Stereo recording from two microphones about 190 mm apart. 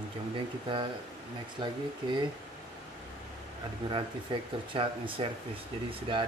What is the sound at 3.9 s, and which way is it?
Speech, 25° right (ahead or behind).